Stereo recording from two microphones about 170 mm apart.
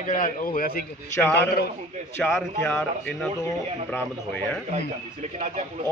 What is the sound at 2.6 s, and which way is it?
Speech, 10° left (ahead or behind).